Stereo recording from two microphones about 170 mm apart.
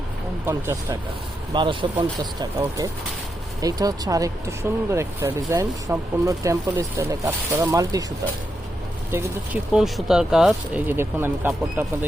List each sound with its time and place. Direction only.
0.4 s speech: 15° right (ahead or behind)
1.5 s speech: 30° right (ahead or behind)
9.1 s speech: 5° right (ahead or behind)